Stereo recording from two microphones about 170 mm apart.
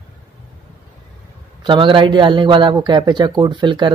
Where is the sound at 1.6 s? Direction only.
30° right (ahead or behind).